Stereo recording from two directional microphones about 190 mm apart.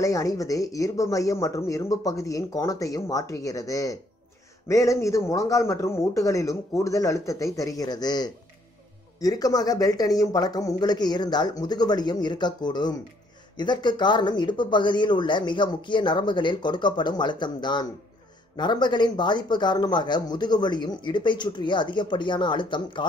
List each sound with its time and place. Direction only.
0.0 s speech: 15° left (ahead or behind)